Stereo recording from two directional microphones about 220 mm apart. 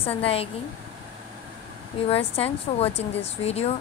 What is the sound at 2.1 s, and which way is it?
A woman's voice, 25° left (ahead or behind).